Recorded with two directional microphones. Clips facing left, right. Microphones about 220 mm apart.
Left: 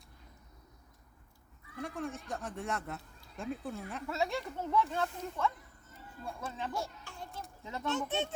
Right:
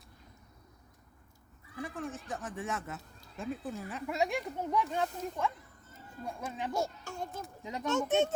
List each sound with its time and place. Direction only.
1.7 s speech: centre (ahead or behind)
4.0 s speech: 15° right (ahead or behind)
6.7 s speech: 45° right (ahead or behind)
7.6 s speech: 15° right (ahead or behind)
7.9 s speech: 45° right (ahead or behind)